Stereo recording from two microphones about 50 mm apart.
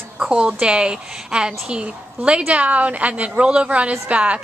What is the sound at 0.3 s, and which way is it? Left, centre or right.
A woman's voice, centre.